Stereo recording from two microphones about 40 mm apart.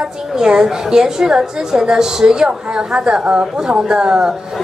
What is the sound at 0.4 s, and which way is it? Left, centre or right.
A woman's voice, centre.